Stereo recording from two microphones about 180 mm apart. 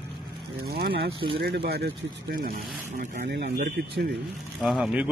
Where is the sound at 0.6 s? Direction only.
60° right (ahead or behind).